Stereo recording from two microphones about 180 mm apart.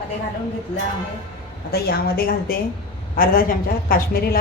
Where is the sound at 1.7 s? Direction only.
60° left (ahead or behind).